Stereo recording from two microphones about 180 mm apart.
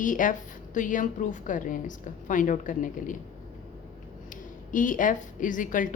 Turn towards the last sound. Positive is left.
turn(degrees=50)  # may be behind; listen again after turning